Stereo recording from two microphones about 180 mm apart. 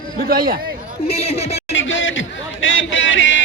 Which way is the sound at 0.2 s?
55° right (ahead or behind).